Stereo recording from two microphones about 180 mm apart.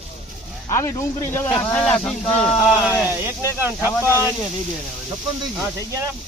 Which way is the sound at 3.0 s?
10° right (ahead or behind).